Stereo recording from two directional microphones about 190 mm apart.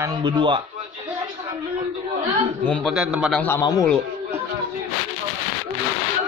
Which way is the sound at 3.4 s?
15° left (ahead or behind).